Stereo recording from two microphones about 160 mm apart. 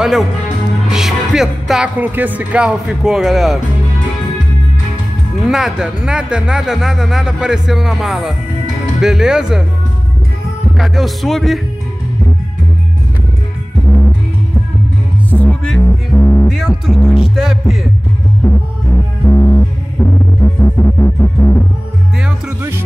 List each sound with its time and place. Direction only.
0.8 s music: centre (ahead or behind)
5.4 s speech: centre (ahead or behind)
10.8 s speech: centre (ahead or behind)
15.2 s music: 10° left (ahead or behind)
16.4 s speech: centre (ahead or behind)
18.4 s music: 10° left (ahead or behind)
22.2 s music: 15° right (ahead or behind)